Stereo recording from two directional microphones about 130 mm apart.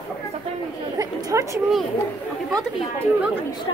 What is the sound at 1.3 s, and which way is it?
Speech, 20° right (ahead or behind).